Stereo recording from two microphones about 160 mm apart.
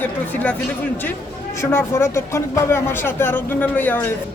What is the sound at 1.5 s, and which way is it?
Speech, 15° left (ahead or behind).